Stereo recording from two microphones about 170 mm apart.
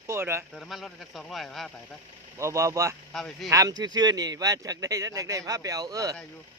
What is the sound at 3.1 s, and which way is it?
Speech, centre (ahead or behind).